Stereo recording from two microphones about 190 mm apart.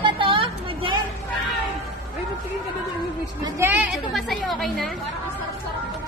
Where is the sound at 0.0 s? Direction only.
25° right (ahead or behind).